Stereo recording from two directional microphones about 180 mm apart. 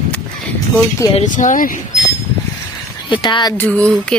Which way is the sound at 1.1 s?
45° left (ahead or behind).